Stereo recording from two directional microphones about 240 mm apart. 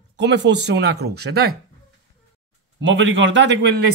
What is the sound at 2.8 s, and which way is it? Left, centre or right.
A man's voice, right.